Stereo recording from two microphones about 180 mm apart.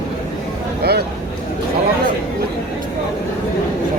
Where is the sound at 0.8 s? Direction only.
60° right (ahead or behind).